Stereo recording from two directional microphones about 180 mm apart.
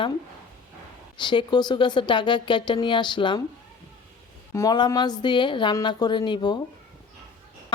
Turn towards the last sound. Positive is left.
turn(degrees=25)  # may be behind; listen again after turning